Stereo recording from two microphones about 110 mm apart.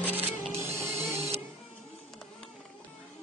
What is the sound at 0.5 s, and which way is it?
Mechanisms, 25° right (ahead or behind).